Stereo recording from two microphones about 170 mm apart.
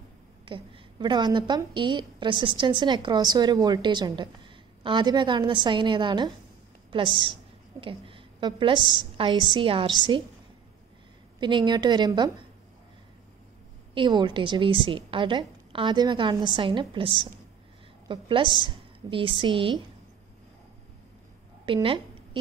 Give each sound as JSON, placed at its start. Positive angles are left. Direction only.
{"t": 0.5, "sound": "a woman's voice", "side_deg": -25}
{"t": 11.3, "sound": "a woman's voice", "side_deg": -25}
{"t": 13.9, "sound": "a woman's voice", "side_deg": -25}
{"t": 21.8, "sound": "a sound", "side_deg": -30}